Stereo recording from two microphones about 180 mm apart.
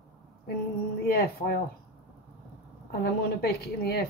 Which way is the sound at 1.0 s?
55° left (ahead or behind).